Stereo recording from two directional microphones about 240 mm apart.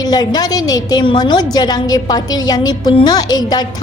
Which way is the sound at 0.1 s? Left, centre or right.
Centre.